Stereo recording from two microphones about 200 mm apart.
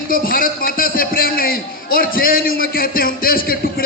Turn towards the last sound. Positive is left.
turn(degrees=45)  # may be behind; listen again after turning